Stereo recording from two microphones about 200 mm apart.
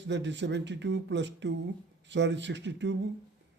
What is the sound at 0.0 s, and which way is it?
A man's voice, 60° right (ahead or behind).